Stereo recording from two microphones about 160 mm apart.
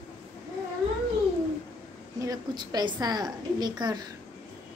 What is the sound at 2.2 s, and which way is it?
A woman's voice, 25° right (ahead or behind).